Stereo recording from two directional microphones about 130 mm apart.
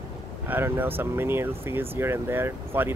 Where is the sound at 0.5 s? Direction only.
15° right (ahead or behind).